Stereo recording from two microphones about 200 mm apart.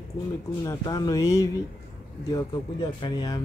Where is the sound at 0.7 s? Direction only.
20° left (ahead or behind).